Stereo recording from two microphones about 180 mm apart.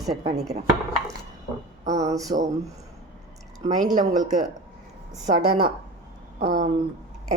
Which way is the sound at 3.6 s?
45° right (ahead or behind).